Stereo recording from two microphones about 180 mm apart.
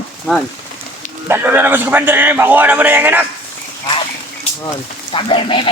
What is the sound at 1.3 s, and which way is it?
A man's voice, 10° right (ahead or behind).